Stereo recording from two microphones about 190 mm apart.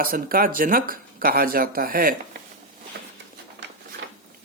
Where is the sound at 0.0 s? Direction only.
50° right (ahead or behind).